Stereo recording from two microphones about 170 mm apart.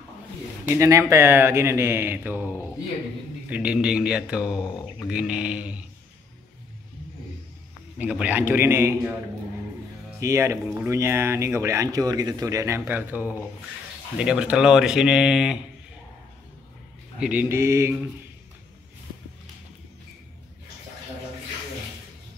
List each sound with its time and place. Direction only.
0.7 s speech: 15° right (ahead or behind)
8.0 s speech: 10° right (ahead or behind)
10.2 s speech: 15° right (ahead or behind)
17.2 s speech: 10° right (ahead or behind)